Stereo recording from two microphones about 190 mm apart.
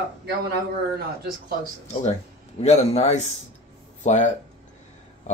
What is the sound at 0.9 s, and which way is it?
Speech, 50° right (ahead or behind).